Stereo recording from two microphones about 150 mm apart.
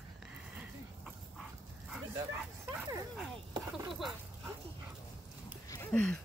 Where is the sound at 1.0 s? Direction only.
5° right (ahead or behind).